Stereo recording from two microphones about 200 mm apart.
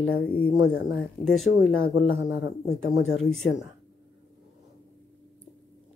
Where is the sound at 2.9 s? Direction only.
90° left.